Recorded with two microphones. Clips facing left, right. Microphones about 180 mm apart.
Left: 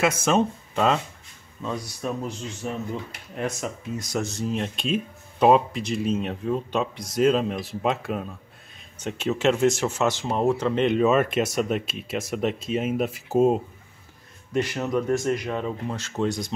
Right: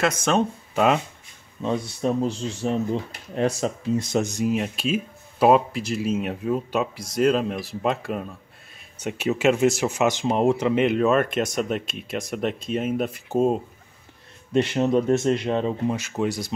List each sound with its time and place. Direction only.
0.0 s speech: 5° left (ahead or behind)
1.6 s speech: 25° right (ahead or behind); by 13.6 s 5° left (ahead or behind)
14.5 s speech: 25° right (ahead or behind)
15.9 s speech: 10° right (ahead or behind)